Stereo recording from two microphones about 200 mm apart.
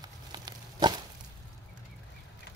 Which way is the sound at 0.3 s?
20° right (ahead or behind).